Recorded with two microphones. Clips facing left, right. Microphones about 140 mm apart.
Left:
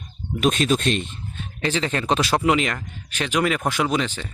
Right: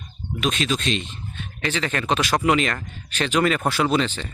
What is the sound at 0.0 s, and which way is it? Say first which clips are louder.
Speech: left 4 dB; 45° left (ahead or behind).